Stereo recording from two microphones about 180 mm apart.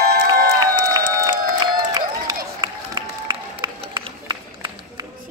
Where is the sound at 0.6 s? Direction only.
20° right (ahead or behind).